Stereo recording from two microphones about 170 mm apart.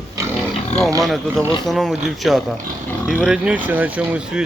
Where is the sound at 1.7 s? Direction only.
Centre (ahead or behind).